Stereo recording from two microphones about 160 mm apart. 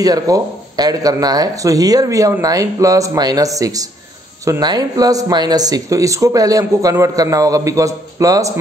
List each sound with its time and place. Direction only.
0.0 s speech: 25° right (ahead or behind)